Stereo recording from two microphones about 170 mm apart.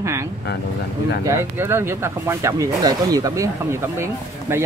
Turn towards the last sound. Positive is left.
turn(degrees=-15)  # may be behind; listen again after turning